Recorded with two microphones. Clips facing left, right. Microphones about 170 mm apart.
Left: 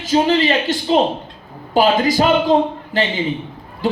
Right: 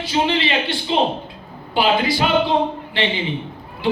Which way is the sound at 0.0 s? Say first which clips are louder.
Left 5 dB; 40° left (ahead or behind).